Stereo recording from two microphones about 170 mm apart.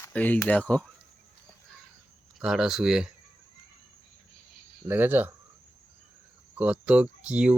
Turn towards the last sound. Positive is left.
turn(degrees=-5)  # may be behind; listen again after turning